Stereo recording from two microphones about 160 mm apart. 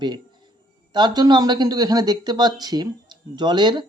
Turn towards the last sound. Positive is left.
turn(degrees=-30)  # may be behind; listen again after turning